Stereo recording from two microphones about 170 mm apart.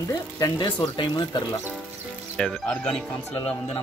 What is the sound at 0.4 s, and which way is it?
Speech, 25° left (ahead or behind).